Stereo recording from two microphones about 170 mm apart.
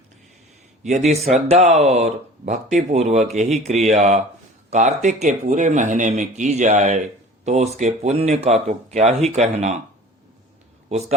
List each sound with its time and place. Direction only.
0.9 s speech: 40° right (ahead or behind)